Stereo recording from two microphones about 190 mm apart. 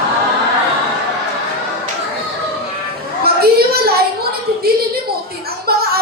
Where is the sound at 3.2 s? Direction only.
55° right (ahead or behind).